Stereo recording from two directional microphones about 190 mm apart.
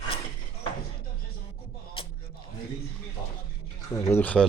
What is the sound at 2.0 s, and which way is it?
Music, 30° left (ahead or behind).